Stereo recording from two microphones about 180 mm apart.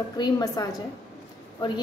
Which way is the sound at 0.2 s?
20° left (ahead or behind).